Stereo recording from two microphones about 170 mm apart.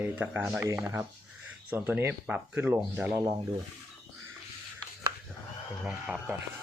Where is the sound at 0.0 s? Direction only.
10° right (ahead or behind).